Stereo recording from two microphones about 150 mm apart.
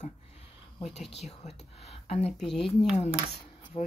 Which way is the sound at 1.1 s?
45° left (ahead or behind).